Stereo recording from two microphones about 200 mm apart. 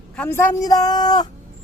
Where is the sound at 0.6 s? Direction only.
20° left (ahead or behind).